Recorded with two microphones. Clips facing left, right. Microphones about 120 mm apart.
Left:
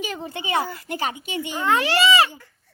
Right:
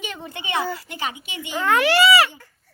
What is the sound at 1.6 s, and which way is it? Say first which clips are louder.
Speech: right 3 dB; 30° left (ahead or behind).